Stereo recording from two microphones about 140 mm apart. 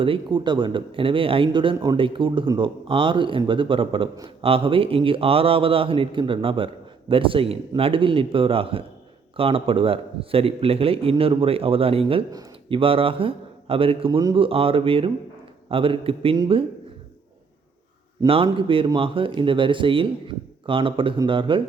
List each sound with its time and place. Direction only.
0.0 s a man's voice: 35° right (ahead or behind)
18.3 s speech: 40° right (ahead or behind)